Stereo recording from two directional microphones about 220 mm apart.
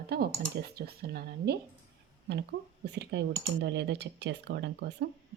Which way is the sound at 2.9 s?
50° right (ahead or behind).